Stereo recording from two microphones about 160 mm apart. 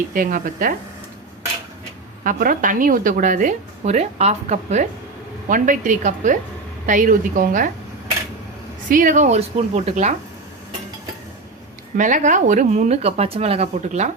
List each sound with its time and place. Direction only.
0.1 s a woman's voice: 60° right (ahead or behind)
2.2 s a woman's voice: 60° right (ahead or behind)
8.9 s speech: 55° right (ahead or behind)
11.9 s speech: 50° right (ahead or behind)